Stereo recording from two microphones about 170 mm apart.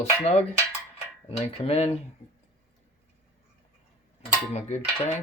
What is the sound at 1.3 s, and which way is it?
Speech, 35° left (ahead or behind).